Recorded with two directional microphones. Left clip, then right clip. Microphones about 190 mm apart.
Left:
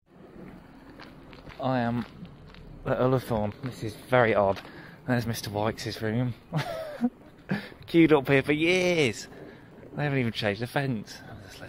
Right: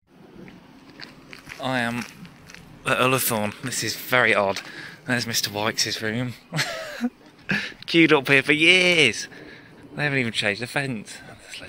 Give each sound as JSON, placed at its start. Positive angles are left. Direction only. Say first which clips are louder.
{"t": 1.6, "sound": "a man's voice", "louder": "right 3 dB", "side_deg": 20}
{"t": 3.2, "sound": "speech", "louder": "right 4 dB", "side_deg": 0}
{"t": 10.3, "sound": "speech", "louder": "right 5 dB", "side_deg": 15}